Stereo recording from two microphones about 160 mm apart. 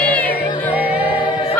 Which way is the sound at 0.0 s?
10° left (ahead or behind).